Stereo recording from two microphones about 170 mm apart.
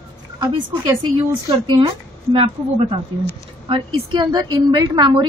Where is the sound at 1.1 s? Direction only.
30° right (ahead or behind).